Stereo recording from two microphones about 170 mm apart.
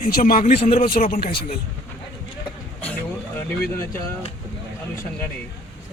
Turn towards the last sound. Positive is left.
turn(degrees=15)  # may be behind; listen again after turning